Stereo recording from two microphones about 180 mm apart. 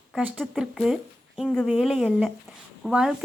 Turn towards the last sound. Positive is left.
turn(degrees=-5)  # may be behind; listen again after turning